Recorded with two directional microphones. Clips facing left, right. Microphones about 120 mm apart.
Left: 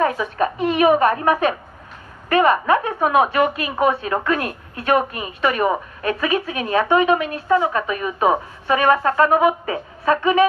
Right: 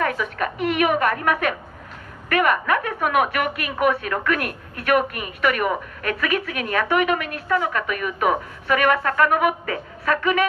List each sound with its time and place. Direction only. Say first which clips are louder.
0.0 s a woman's voice: left 4 dB; 25° left (ahead or behind)